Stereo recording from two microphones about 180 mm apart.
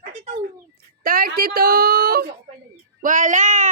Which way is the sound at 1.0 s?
55° right (ahead or behind).